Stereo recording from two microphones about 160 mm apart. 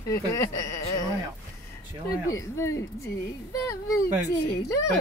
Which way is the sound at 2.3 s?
20° left (ahead or behind).